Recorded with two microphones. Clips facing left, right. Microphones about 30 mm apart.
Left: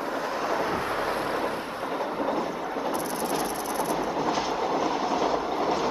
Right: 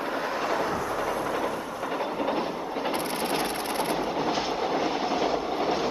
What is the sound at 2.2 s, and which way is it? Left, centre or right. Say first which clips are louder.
Train: even; right.